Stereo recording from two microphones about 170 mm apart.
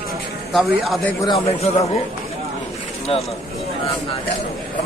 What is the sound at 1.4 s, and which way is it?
Speech, 35° left (ahead or behind).